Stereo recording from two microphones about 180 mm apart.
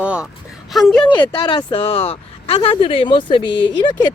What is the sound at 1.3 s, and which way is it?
A woman's voice, 30° left (ahead or behind).